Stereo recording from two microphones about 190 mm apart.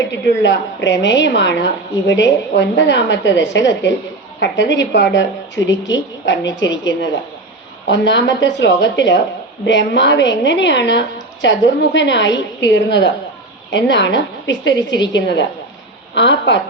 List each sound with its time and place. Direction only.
0.1 s a woman's voice: 70° left (ahead or behind)